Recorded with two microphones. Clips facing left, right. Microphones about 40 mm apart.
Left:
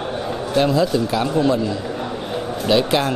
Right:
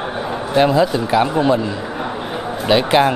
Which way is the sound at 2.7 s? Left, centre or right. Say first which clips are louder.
Right 4 dB; right.